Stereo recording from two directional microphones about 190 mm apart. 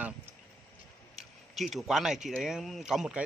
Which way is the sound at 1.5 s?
Centre (ahead or behind).